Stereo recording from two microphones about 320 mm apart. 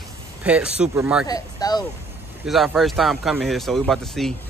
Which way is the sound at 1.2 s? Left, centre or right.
Centre.